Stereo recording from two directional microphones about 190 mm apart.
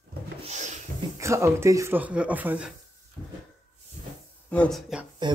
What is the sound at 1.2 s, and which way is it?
Speech, 15° right (ahead or behind).